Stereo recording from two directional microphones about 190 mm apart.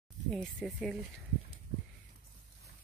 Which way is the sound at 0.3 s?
5° left (ahead or behind).